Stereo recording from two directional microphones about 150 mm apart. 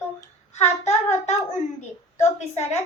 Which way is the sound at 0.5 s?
45° left (ahead or behind).